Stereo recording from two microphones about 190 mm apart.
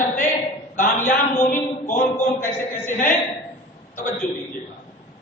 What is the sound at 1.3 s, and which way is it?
Speech, 45° left (ahead or behind).